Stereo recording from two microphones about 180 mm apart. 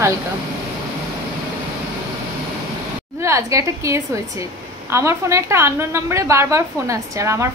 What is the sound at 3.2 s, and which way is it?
A woman's voice, 15° right (ahead or behind).